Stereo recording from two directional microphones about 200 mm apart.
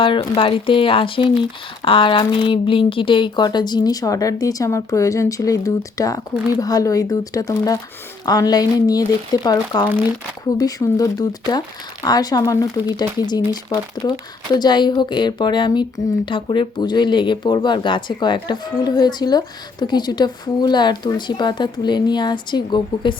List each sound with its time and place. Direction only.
0.0 s speech: 25° left (ahead or behind)